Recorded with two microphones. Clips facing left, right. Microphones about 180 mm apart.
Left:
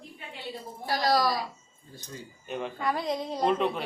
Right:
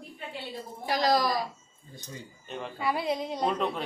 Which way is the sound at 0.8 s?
20° right (ahead or behind).